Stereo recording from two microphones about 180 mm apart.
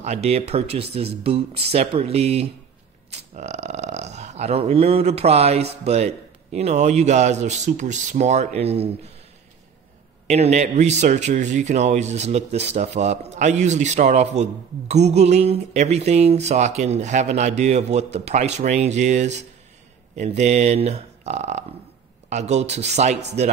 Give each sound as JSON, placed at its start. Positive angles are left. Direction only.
{"t": 0.0, "sound": "speech", "side_deg": -35}
{"t": 10.2, "sound": "speech", "side_deg": -40}